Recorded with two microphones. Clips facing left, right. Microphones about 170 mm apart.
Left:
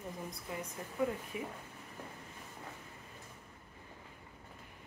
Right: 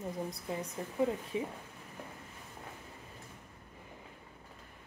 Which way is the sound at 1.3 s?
25° right (ahead or behind).